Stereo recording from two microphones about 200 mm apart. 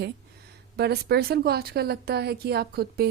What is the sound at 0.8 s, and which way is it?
Speech, 55° right (ahead or behind).